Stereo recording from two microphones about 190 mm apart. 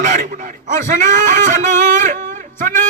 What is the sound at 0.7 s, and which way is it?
A man's voice, 40° right (ahead or behind).